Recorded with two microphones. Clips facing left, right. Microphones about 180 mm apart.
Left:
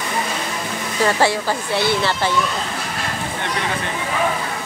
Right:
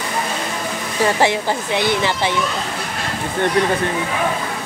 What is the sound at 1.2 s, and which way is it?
Speech, 20° right (ahead or behind).